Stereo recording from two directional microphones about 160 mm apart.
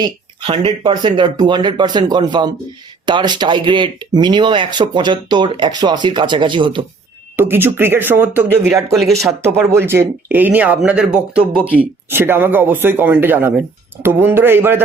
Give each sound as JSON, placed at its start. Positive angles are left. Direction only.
{"t": 0.0, "sound": "speech", "side_deg": -35}
{"t": 7.3, "sound": "speech", "side_deg": -15}
{"t": 8.9, "sound": "speech", "side_deg": 0}
{"t": 9.4, "sound": "speech", "side_deg": -15}